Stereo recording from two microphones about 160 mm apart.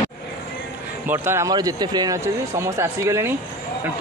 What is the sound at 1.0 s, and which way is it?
Speech, 15° right (ahead or behind).